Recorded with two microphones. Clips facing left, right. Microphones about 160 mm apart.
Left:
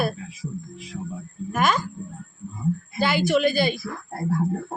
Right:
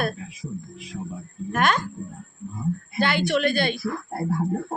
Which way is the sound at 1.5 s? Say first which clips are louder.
Even; 5° left (ahead or behind).